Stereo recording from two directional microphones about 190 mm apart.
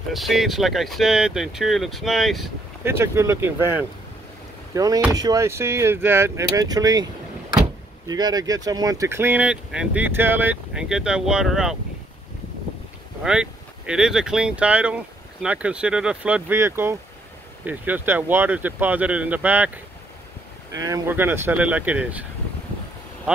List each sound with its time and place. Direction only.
0.1 s speech: centre (ahead or behind)
2.8 s speech: 15° right (ahead or behind)
8.1 s speech: 20° right (ahead or behind); by 11.7 s 5° right (ahead or behind)
13.2 s speech: 5° right (ahead or behind)